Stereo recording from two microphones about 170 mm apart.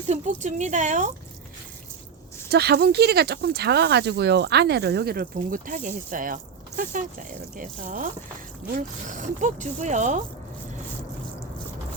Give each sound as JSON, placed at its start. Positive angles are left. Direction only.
{"t": 0.1, "sound": "speech", "side_deg": -45}
{"t": 2.5, "sound": "speech", "side_deg": -70}